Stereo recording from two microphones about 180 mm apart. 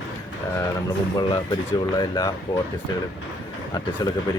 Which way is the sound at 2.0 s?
25° left (ahead or behind).